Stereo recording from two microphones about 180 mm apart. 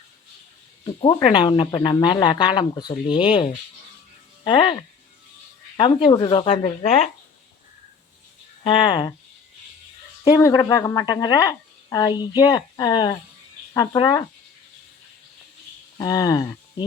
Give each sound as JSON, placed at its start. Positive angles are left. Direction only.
{"t": 0.9, "sound": "speech", "side_deg": 25}
{"t": 8.6, "sound": "speech", "side_deg": 30}
{"t": 10.2, "sound": "speech", "side_deg": 15}
{"t": 16.0, "sound": "speech", "side_deg": 20}